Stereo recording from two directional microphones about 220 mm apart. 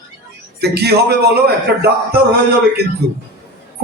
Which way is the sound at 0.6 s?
45° right (ahead or behind).